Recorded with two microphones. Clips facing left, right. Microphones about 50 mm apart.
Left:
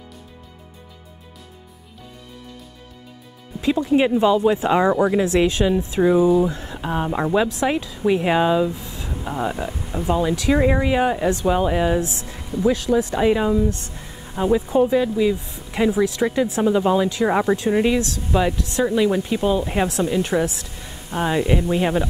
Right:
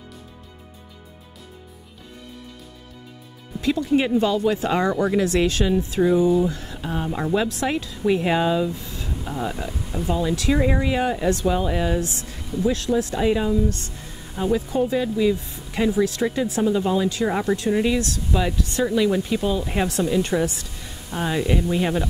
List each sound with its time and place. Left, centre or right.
3.6 s speech: centre
12.0 s speech: right
12.5 s speech: centre
12.9 s speech: left; by 15.4 s centre
15.4 s a sound: left
16.3 s speech: left
18.9 s speech: centre